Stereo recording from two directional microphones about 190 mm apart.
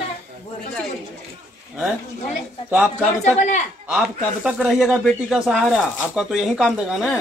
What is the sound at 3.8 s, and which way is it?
A man's voice, 5° right (ahead or behind).